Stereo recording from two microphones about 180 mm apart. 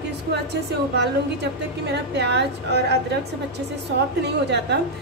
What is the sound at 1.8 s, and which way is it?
A woman's voice, 70° right (ahead or behind).